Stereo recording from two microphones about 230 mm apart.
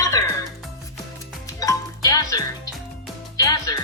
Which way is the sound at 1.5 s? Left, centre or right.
Centre.